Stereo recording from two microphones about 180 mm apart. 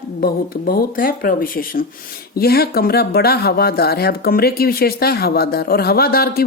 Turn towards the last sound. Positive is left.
turn(degrees=60)  # may be behind; listen again after turning